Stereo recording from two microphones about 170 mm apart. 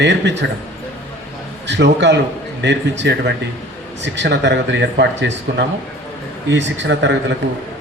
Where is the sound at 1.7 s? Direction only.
90° right.